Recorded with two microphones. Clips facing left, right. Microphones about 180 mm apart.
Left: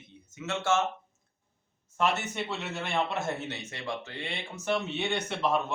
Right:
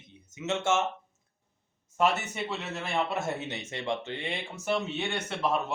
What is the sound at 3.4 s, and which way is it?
Speech, 20° right (ahead or behind).